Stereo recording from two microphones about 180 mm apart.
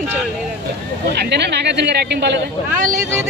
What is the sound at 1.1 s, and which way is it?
Speech, 70° right (ahead or behind).